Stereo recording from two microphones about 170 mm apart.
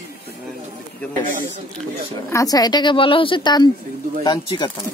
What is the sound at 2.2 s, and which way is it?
A woman's voice, 20° left (ahead or behind).